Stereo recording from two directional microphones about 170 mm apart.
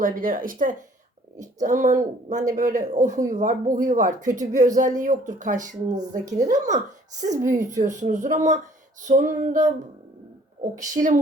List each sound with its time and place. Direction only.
0.0 s speech: 55° right (ahead or behind)